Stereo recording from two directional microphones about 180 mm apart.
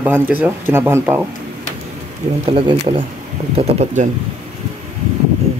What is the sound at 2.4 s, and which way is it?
Speech, 30° right (ahead or behind).